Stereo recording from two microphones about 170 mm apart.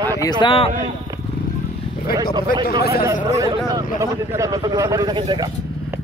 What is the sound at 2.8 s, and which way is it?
Speech, 60° left (ahead or behind).